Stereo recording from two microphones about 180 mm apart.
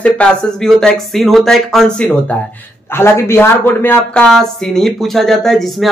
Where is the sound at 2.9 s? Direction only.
15° left (ahead or behind).